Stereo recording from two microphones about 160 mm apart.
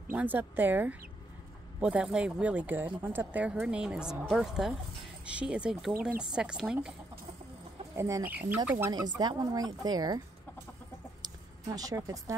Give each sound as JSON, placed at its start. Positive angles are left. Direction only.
{"t": 0.1, "sound": "speech", "side_deg": -10}
{"t": 7.9, "sound": "speech", "side_deg": -15}
{"t": 11.2, "sound": "speech", "side_deg": -20}